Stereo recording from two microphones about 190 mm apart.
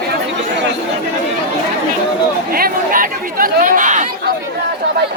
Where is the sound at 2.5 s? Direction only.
50° right (ahead or behind).